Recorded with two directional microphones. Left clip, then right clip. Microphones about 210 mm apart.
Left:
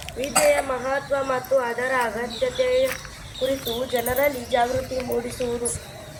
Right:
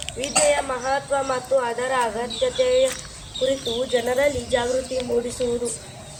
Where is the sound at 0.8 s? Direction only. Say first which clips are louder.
Right 1 dB; 35° right (ahead or behind); by 4.6 s 55° right (ahead or behind).